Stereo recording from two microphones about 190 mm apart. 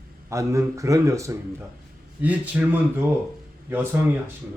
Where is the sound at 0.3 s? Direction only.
15° right (ahead or behind).